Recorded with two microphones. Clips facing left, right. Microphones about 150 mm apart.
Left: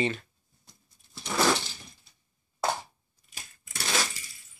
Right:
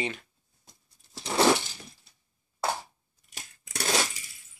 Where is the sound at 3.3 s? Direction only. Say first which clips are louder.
Right 4 dB; 75° right (ahead or behind).